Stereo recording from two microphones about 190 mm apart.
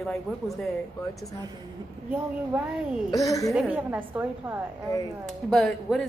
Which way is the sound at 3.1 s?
15° left (ahead or behind).